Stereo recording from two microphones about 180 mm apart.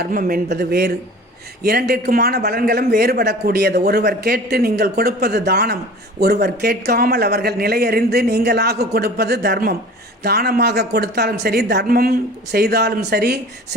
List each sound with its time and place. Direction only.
0.0 s a man's voice: 55° right (ahead or behind)